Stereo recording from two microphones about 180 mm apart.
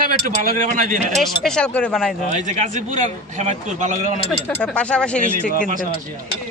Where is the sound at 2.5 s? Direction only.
45° right (ahead or behind).